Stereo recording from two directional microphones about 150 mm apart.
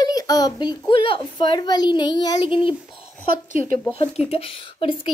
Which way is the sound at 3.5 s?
60° right (ahead or behind).